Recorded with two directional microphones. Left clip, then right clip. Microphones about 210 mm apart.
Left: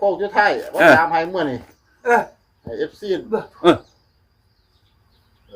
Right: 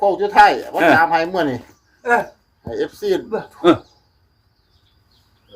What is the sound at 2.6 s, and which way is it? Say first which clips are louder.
Speech: right 3 dB; 50° right (ahead or behind).